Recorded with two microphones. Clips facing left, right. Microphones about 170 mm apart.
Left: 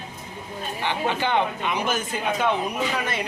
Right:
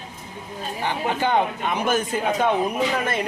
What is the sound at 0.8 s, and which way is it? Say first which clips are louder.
Speech: right 1 dB; 40° right (ahead or behind).